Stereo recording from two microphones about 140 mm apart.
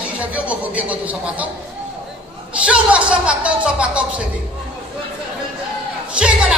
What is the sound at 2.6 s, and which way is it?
A woman's voice, 10° right (ahead or behind).